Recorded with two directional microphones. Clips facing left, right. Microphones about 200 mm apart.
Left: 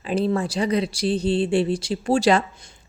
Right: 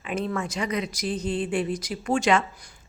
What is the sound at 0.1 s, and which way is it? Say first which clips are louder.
A woman's voice: left 6 dB; 30° left (ahead or behind).